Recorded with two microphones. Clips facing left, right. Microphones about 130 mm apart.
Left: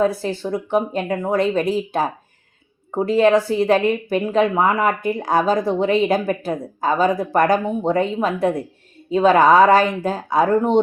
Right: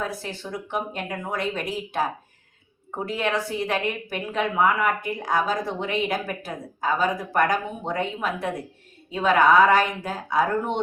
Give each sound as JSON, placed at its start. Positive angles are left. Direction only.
{"t": 0.0, "sound": "a woman's voice", "side_deg": 30}